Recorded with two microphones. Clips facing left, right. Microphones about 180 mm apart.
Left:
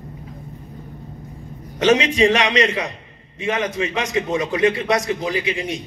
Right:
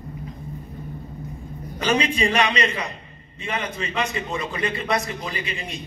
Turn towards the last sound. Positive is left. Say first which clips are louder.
# left 8 dB
turn(degrees=90)